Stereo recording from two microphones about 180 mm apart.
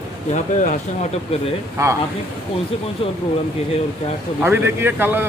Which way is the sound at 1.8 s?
15° right (ahead or behind).